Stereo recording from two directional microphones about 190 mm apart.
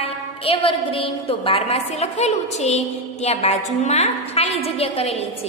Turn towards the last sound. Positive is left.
turn(degrees=35)  # may be behind; listen again after turning